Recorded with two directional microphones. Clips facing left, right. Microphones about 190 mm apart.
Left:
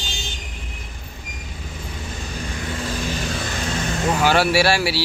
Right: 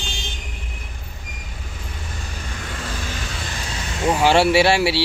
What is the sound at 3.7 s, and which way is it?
Vehicle, 50° left (ahead or behind).